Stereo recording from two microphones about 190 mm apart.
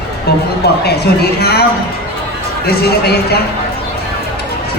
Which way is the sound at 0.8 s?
55° left (ahead or behind).